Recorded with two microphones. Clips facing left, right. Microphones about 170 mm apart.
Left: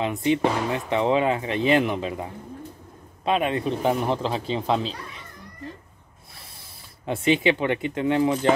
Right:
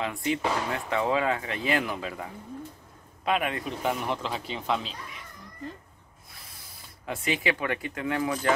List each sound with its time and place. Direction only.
0.0 s speech: 20° left (ahead or behind)
7.1 s speech: 25° left (ahead or behind)